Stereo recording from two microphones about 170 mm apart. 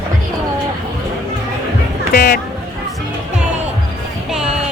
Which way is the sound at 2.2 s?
60° left (ahead or behind).